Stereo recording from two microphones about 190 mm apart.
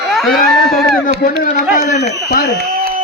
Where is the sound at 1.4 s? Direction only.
40° left (ahead or behind).